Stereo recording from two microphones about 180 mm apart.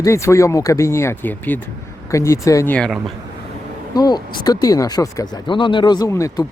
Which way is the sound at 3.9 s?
20° left (ahead or behind).